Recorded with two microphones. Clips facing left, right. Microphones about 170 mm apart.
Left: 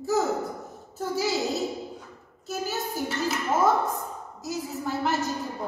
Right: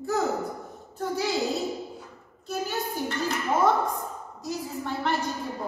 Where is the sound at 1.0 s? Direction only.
5° left (ahead or behind).